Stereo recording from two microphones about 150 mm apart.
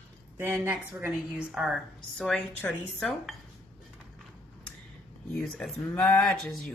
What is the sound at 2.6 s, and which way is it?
Speech, 10° left (ahead or behind).